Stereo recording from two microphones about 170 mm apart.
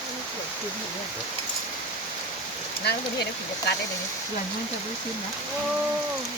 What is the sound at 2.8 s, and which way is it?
Speech, 70° left (ahead or behind).